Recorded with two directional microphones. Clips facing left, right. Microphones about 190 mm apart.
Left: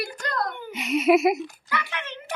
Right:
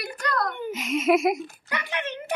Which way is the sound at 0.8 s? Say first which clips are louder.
Left 3 dB; 5° left (ahead or behind).